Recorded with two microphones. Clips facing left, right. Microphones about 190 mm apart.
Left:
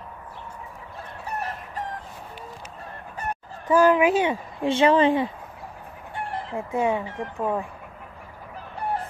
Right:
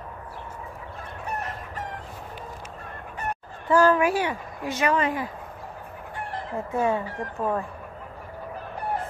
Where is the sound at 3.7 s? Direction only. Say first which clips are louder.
Left 2 dB; 15° left (ahead or behind).